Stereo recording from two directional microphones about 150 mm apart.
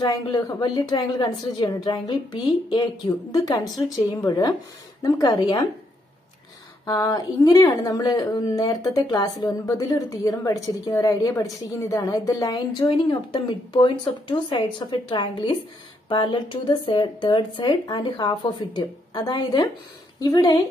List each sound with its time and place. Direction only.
0.0 s a woman's voice: 25° left (ahead or behind)
7.0 s a woman's voice: 25° left (ahead or behind)